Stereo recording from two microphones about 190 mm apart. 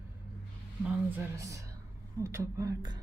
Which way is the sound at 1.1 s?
15° right (ahead or behind).